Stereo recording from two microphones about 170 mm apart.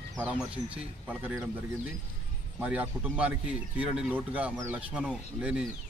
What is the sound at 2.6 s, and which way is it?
Speech, 10° right (ahead or behind).